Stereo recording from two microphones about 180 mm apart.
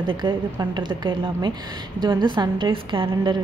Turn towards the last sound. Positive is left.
turn(degrees=-25)  # may be behind; listen again after turning